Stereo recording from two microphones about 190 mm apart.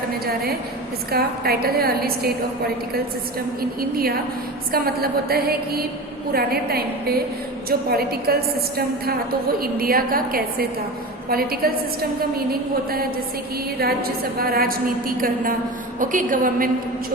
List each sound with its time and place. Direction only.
1.1 s a woman's voice: 55° right (ahead or behind)
3.6 s a woman's voice: 50° right (ahead or behind)